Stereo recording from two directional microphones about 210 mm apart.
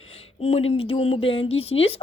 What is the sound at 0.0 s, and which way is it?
Speech, 30° left (ahead or behind).